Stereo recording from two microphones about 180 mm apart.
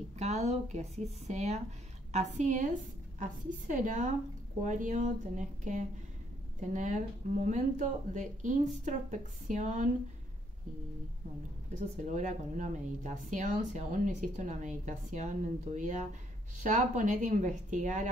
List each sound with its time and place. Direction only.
0.2 s speech: 40° right (ahead or behind)
12.1 s speech: 45° right (ahead or behind)